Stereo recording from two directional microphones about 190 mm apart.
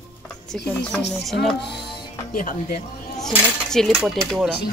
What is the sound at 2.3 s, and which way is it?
Speech, 45° left (ahead or behind).